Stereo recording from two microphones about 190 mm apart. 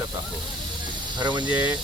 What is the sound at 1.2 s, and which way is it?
Speech, 25° right (ahead or behind).